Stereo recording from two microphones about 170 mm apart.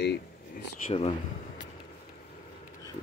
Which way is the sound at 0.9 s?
40° left (ahead or behind).